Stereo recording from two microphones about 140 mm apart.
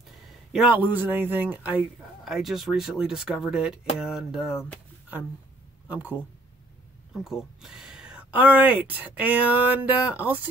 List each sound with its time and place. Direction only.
0.5 s a man's voice: 5° right (ahead or behind)
5.9 s speech: 15° right (ahead or behind)
7.2 s speech: 5° right (ahead or behind)